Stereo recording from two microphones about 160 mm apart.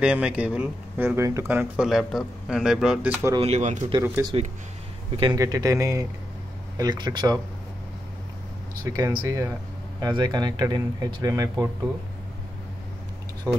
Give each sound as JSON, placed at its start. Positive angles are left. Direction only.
{"t": 0.0, "sound": "speech", "side_deg": -5}
{"t": 3.3, "sound": "speech", "side_deg": -40}
{"t": 4.2, "sound": "speech", "side_deg": -15}
{"t": 5.1, "sound": "speech", "side_deg": -30}
{"t": 5.4, "sound": "speech", "side_deg": -20}
{"t": 8.8, "sound": "speech", "side_deg": -20}
{"t": 13.5, "sound": "speech", "side_deg": -15}